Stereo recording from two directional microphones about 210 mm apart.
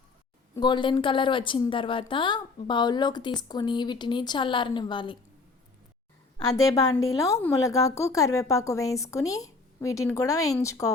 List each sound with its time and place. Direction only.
0.5 s a woman's voice: 20° left (ahead or behind)
6.4 s a woman's voice: 15° left (ahead or behind)